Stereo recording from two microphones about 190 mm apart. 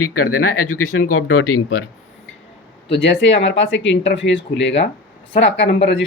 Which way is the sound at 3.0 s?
70° left (ahead or behind).